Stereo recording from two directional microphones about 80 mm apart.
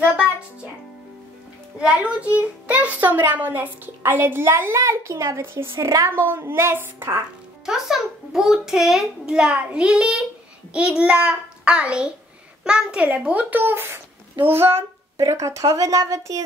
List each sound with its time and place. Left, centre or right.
0.0 s music: centre
1.8 s a child's voice: centre
7.6 s a child's voice: centre; by 16.4 s right